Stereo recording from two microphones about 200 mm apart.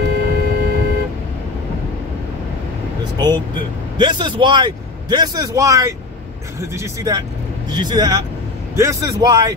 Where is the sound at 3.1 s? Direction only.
20° right (ahead or behind).